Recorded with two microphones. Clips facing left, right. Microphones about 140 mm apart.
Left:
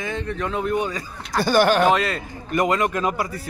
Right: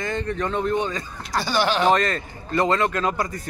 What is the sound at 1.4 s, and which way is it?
Speech, 50° left (ahead or behind).